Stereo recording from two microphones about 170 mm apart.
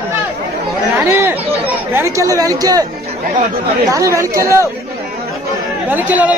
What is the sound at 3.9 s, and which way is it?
Speech, 20° right (ahead or behind).